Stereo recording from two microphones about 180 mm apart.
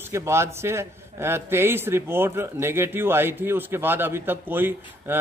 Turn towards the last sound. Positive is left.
turn(degrees=-10)  # may be behind; listen again after turning